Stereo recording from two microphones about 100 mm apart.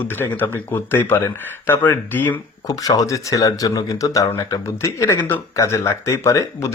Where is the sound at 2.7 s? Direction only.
35° left (ahead or behind).